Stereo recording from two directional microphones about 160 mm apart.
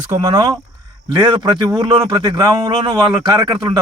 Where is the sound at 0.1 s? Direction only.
25° right (ahead or behind).